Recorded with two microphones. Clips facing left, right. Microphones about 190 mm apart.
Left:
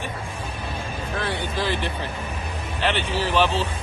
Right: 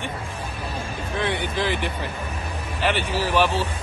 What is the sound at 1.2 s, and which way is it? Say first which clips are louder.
A man's voice: right 2 dB; 20° right (ahead or behind).